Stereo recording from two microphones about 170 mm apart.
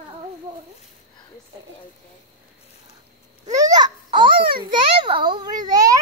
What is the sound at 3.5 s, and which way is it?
Babbling, 20° right (ahead or behind).